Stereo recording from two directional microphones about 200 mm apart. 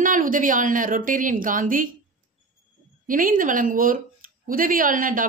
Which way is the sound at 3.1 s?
45° right (ahead or behind).